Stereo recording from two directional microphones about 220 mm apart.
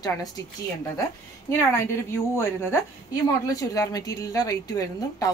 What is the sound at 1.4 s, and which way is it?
A woman's voice, 10° left (ahead or behind).